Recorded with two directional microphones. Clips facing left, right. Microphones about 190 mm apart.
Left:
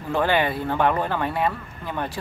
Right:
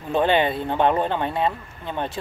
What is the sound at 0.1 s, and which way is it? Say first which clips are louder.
Speech: right 2 dB; 20° right (ahead or behind).